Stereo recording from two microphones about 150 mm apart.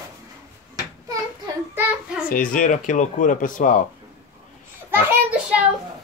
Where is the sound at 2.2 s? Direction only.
65° left (ahead or behind).